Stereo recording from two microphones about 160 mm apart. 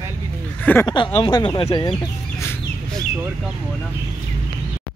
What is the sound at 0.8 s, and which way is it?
Speech, 30° left (ahead or behind).